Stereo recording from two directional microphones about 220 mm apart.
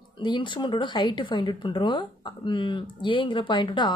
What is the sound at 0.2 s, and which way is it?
Speech, 20° left (ahead or behind).